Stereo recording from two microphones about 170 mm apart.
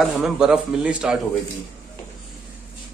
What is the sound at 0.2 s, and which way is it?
Speech, 5° right (ahead or behind).